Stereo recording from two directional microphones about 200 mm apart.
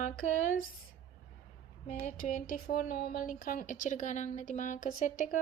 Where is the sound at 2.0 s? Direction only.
40° left (ahead or behind).